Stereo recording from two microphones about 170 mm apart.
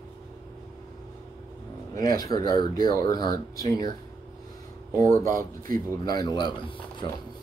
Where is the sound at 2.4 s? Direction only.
25° left (ahead or behind).